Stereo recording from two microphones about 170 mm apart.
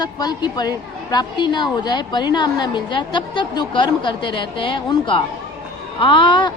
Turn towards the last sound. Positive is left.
turn(degrees=30)  # may be behind; listen again after turning